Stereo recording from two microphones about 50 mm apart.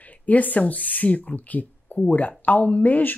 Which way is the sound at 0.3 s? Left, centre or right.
Left.